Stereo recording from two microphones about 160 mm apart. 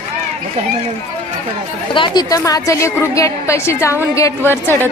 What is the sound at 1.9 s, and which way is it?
A woman's voice, 30° left (ahead or behind).